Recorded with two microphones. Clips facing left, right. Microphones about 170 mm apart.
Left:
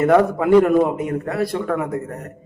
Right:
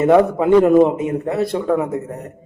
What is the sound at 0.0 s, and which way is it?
A man's voice, 20° right (ahead or behind).